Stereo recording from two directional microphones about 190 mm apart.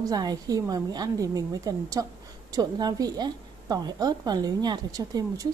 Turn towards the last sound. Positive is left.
turn(degrees=-20)  # may be behind; listen again after turning